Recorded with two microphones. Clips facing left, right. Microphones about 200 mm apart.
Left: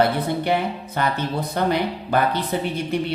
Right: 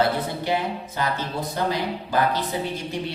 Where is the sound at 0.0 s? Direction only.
60° left (ahead or behind).